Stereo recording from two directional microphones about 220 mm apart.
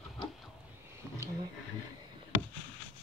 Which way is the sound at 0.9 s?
15° right (ahead or behind).